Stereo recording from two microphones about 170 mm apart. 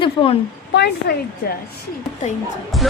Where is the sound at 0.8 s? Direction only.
80° left.